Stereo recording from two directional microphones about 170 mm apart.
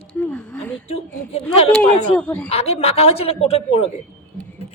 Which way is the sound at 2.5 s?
35° left (ahead or behind).